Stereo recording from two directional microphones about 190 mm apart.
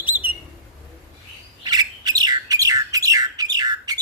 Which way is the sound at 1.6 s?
20° right (ahead or behind).